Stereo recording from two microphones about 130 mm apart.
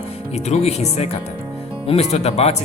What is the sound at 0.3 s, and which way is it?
Speech, 55° left (ahead or behind).